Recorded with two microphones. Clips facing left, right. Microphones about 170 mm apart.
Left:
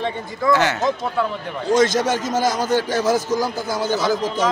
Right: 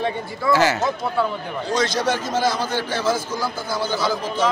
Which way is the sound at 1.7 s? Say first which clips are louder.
Left 5 dB; 45° left (ahead or behind).